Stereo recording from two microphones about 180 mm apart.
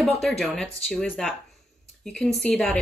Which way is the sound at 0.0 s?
Centre (ahead or behind).